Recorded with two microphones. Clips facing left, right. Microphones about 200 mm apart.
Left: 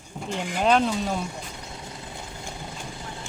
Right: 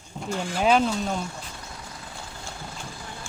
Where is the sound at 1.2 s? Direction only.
20° left (ahead or behind).